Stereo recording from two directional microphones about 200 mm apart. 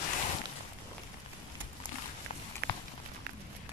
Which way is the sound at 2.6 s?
50° right (ahead or behind).